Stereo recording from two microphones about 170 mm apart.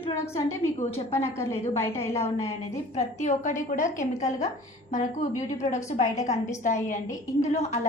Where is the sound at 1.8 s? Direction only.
15° left (ahead or behind).